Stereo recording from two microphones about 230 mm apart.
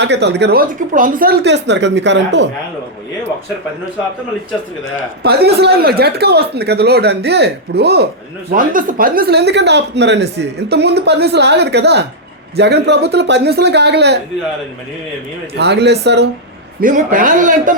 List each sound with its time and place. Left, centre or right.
0.0 s speech: right
5.2 s speech: right
15.5 s speech: right
16.8 s a man's voice: right